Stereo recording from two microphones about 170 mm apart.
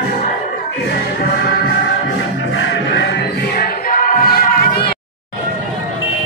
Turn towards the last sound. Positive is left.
turn(degrees=60)  # may be behind; listen again after turning